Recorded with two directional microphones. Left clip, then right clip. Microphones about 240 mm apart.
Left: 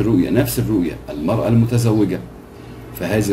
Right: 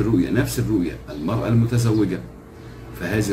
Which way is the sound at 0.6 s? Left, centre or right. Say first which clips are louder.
Left 3 dB; centre.